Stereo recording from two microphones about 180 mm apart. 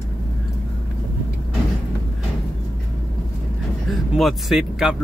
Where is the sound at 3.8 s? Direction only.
Centre (ahead or behind).